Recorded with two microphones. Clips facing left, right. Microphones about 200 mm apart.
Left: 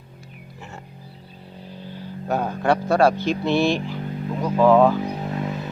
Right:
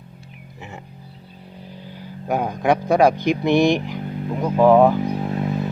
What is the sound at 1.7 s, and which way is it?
Speech, 15° right (ahead or behind).